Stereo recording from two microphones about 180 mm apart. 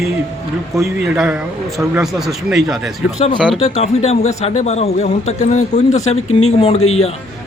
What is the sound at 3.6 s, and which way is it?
Speech, 35° left (ahead or behind).